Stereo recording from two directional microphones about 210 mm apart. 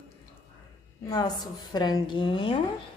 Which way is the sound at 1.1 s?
20° left (ahead or behind).